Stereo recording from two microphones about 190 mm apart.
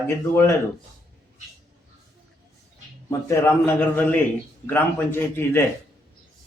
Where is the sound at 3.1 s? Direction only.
15° left (ahead or behind).